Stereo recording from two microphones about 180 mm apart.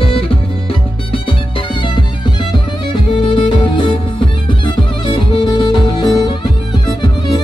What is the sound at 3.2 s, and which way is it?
Music, 25° left (ahead or behind).